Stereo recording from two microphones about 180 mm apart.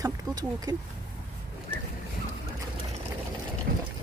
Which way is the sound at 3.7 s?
60° right (ahead or behind).